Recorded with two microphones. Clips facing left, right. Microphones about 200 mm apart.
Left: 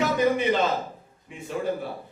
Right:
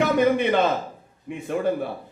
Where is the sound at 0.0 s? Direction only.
60° right (ahead or behind).